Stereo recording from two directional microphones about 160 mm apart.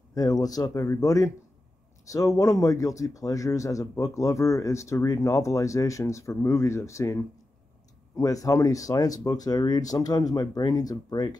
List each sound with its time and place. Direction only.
0.1 s speech: 25° left (ahead or behind)
8.2 s speech: 20° left (ahead or behind)